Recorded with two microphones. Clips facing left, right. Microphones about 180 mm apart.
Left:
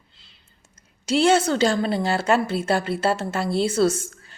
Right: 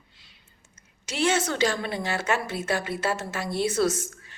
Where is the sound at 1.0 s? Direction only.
30° left (ahead or behind).